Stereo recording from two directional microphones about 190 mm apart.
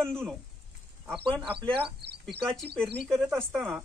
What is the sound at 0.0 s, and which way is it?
Speech, 5° left (ahead or behind).